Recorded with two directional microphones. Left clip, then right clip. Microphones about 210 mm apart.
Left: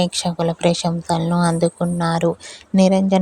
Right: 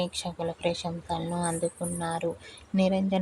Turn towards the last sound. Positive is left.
turn(degrees=35)  # may be behind; listen again after turning